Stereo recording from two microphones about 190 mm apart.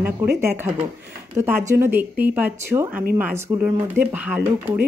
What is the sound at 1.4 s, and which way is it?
A woman's voice, 10° right (ahead or behind).